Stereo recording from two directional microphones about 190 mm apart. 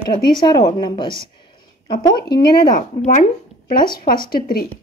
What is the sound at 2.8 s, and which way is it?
Speech, 40° left (ahead or behind).